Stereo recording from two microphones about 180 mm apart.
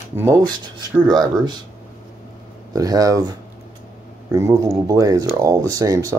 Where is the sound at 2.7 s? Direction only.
20° right (ahead or behind).